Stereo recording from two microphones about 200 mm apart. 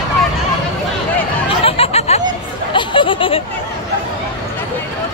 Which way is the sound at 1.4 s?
30° left (ahead or behind).